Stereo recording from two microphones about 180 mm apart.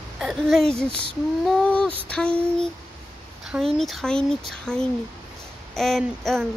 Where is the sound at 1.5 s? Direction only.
5° left (ahead or behind).